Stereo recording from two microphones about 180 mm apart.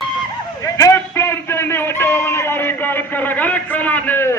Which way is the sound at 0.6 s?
20° left (ahead or behind).